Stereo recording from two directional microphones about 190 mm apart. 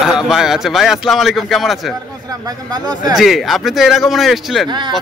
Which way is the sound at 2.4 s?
20° right (ahead or behind).